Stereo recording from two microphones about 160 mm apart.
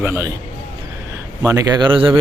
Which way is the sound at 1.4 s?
20° right (ahead or behind).